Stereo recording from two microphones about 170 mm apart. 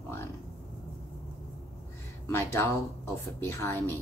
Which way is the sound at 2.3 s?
15° left (ahead or behind).